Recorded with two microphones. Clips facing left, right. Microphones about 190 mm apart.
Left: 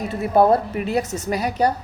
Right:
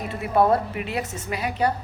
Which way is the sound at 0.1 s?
40° left (ahead or behind).